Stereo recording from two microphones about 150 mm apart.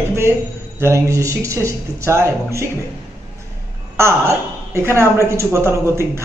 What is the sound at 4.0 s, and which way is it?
A woman's voice, 20° right (ahead or behind).